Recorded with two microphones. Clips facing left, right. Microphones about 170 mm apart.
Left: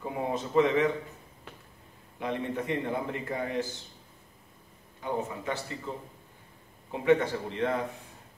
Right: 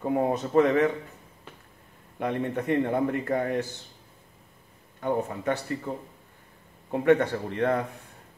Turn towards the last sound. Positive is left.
turn(degrees=-50)  # may be behind; listen again after turning